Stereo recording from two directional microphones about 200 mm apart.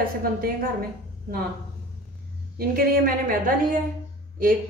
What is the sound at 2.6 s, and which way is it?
A woman's voice, 45° right (ahead or behind).